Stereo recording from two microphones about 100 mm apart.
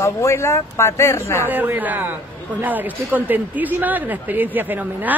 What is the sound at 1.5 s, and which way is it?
Speech, 20° right (ahead or behind).